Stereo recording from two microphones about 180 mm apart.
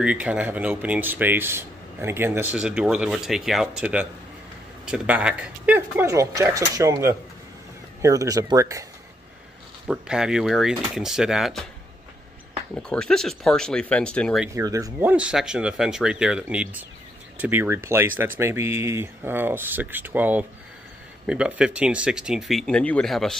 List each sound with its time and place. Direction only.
0.0 s speech: 5° right (ahead or behind)
9.8 s speech: 5° right (ahead or behind)
12.7 s speech: 5° left (ahead or behind)
14.5 s speech: 20° right (ahead or behind); by 23.3 s centre (ahead or behind)